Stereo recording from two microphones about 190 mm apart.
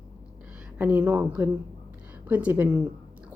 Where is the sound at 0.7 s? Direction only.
10° right (ahead or behind).